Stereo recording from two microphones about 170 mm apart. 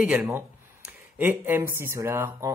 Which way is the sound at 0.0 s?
5° right (ahead or behind).